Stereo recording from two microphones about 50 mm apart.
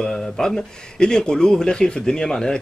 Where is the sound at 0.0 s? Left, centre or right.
Centre.